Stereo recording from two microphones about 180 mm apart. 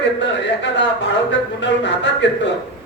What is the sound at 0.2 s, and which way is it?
A man's voice, 80° left.